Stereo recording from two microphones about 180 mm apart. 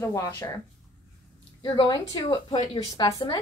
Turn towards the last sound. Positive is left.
turn(degrees=25)  # may be behind; listen again after turning